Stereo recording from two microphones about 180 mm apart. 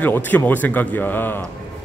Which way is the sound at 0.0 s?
10° left (ahead or behind).